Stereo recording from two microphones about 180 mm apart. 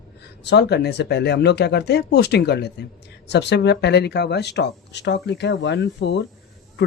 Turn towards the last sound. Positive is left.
turn(degrees=75)  # may be behind; listen again after turning